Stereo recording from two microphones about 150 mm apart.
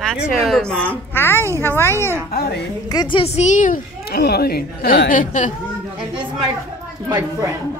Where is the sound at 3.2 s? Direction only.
50° left (ahead or behind).